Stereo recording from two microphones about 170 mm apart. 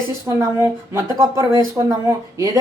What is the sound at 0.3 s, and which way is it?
Speech, 15° right (ahead or behind).